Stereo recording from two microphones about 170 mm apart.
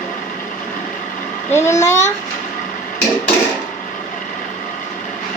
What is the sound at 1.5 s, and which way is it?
Speech, 15° left (ahead or behind).